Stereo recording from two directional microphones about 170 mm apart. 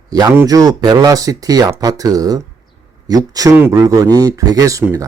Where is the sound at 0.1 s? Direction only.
20° right (ahead or behind).